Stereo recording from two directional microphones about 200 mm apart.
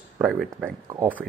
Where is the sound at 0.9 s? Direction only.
15° right (ahead or behind).